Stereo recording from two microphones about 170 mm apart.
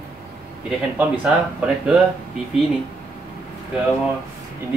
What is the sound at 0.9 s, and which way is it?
Speech, 5° right (ahead or behind).